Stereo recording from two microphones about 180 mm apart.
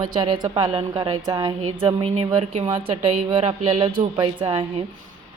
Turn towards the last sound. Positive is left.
turn(degrees=-30)  # may be behind; listen again after turning